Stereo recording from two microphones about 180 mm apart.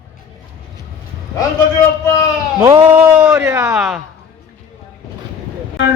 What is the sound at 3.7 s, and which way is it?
Speech, centre (ahead or behind).